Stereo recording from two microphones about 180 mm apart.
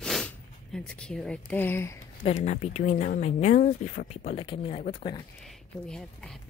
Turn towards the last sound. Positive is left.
turn(degrees=5)  # may be behind; listen again after turning